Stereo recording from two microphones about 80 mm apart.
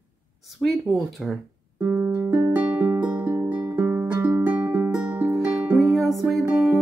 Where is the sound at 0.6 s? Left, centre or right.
Centre.